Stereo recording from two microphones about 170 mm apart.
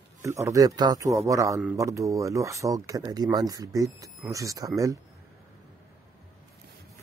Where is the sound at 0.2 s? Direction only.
15° right (ahead or behind).